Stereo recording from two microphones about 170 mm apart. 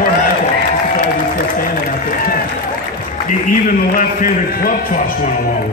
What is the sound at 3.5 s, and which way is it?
A man's voice, 55° left (ahead or behind).